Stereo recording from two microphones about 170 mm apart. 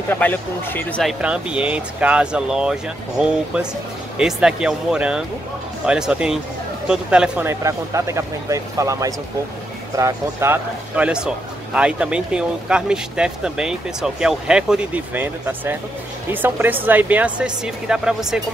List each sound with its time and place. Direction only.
0.1 s speech: 10° left (ahead or behind)
1.2 s a man's voice: 5° right (ahead or behind)